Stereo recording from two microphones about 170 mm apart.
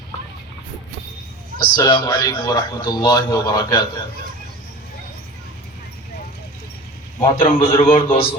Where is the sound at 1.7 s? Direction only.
25° left (ahead or behind).